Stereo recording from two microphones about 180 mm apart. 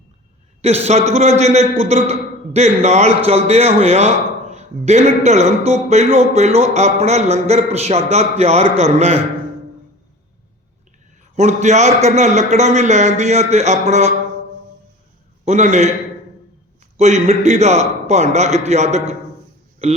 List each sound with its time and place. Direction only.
0.9 s a man's voice: 40° right (ahead or behind)
11.3 s a man's voice: 40° right (ahead or behind)
15.4 s a man's voice: 40° right (ahead or behind)
17.0 s a man's voice: 40° right (ahead or behind)